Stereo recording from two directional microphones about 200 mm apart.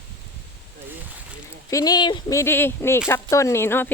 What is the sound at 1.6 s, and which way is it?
Speech, 15° left (ahead or behind).